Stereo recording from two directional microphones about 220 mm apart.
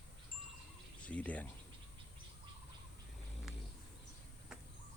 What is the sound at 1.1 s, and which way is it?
Speech, 5° left (ahead or behind).